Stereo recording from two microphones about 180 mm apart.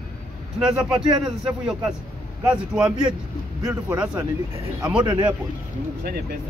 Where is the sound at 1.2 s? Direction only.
Centre (ahead or behind).